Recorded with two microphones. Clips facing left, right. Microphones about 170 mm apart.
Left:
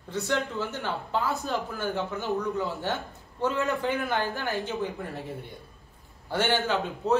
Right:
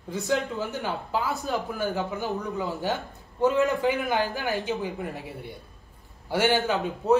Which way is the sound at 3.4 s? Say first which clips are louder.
Right 5 dB; 15° right (ahead or behind).